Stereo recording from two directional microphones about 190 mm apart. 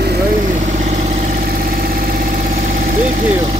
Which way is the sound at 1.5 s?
50° right (ahead or behind).